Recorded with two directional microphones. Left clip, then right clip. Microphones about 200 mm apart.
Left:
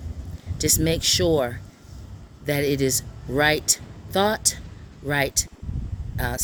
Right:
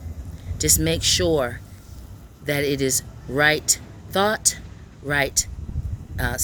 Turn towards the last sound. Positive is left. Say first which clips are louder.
# right 2 dB
turn(degrees=15)  # may be behind; listen again after turning